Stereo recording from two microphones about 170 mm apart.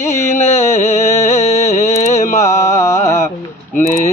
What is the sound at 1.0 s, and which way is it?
Music, 15° left (ahead or behind).